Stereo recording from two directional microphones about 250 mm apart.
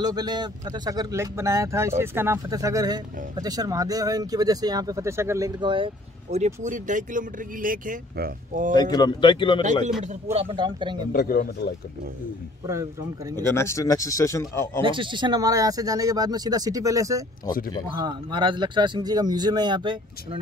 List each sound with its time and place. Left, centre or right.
0.0 s speech: centre
6.3 s speech: right
8.9 s speech: centre
10.3 s a man's voice: right
11.1 s speech: left
13.5 s speech: centre
14.8 s speech: centre